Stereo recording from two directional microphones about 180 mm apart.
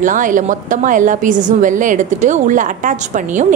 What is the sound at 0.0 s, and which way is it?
A woman's voice, 45° right (ahead or behind).